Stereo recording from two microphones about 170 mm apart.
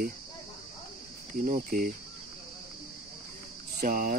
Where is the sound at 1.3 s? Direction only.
55° right (ahead or behind).